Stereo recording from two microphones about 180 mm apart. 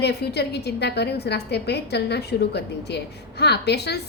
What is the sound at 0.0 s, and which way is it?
A woman's voice, 65° left (ahead or behind).